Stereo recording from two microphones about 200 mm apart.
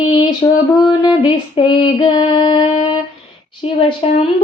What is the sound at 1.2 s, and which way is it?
Female singing, 20° left (ahead or behind).